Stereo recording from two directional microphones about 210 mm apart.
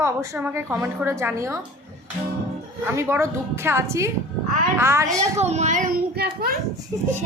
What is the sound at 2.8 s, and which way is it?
A woman's voice, 10° right (ahead or behind).